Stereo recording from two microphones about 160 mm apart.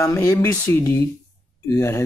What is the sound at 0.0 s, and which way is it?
Speech, 15° left (ahead or behind).